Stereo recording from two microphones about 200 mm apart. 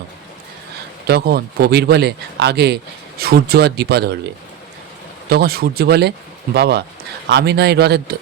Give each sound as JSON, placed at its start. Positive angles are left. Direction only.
{"t": 1.0, "sound": "speech", "side_deg": -50}
{"t": 5.3, "sound": "speech", "side_deg": -50}